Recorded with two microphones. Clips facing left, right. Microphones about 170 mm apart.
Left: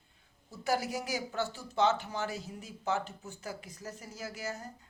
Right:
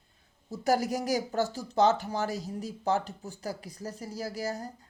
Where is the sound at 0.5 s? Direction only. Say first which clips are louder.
Right 5 dB; 40° right (ahead or behind).